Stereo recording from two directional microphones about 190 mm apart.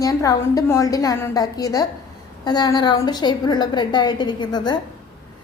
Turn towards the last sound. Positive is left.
turn(degrees=20)  # may be behind; listen again after turning